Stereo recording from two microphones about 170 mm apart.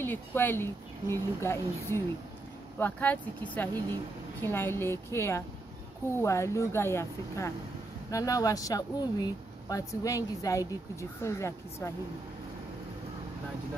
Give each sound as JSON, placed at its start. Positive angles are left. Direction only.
{"t": 0.0, "sound": "a woman's voice", "side_deg": 10}